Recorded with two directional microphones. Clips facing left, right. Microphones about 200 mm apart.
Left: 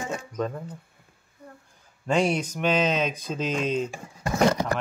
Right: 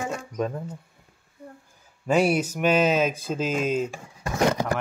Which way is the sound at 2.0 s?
5° right (ahead or behind).